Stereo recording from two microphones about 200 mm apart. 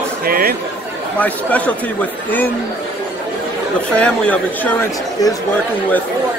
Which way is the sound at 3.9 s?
5° left (ahead or behind).